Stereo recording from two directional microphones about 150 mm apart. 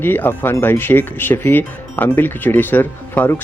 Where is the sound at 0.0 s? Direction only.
15° left (ahead or behind).